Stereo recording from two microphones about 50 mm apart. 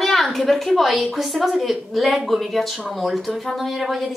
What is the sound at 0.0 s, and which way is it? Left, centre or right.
A woman's voice, centre.